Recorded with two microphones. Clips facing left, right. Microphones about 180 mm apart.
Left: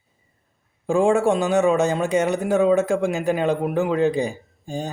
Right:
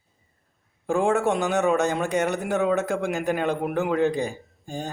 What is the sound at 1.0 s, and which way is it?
A man's voice, 15° left (ahead or behind).